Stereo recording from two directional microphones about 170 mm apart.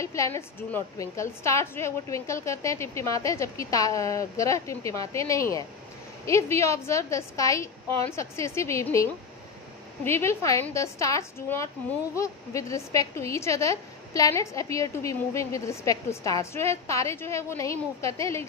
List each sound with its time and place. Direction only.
0.0 s a woman's voice: 15° left (ahead or behind)